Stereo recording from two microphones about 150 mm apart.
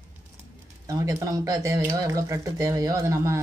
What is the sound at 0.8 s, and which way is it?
Speech, 20° right (ahead or behind).